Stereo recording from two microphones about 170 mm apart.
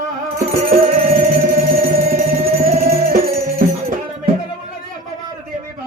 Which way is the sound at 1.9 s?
55° right (ahead or behind).